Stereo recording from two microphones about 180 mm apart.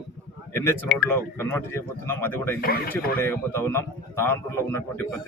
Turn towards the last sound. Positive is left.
turn(degrees=15)  # may be behind; listen again after turning